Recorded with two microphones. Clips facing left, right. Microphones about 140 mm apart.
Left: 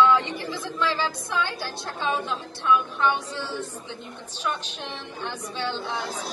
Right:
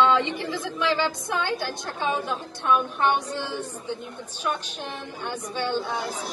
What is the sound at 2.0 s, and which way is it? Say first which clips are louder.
A woman's voice: even; 55° right (ahead or behind).